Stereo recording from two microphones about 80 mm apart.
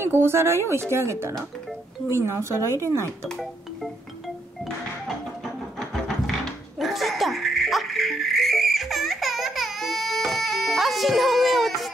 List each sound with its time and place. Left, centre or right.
0.0 s speech: right
2.1 s speech: right
3.3 s speech: centre
5.8 s music: centre
6.8 s a sound: centre